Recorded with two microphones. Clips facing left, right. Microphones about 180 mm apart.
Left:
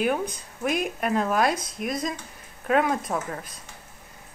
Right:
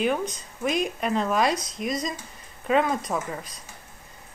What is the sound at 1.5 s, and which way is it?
Speech, 55° left (ahead or behind).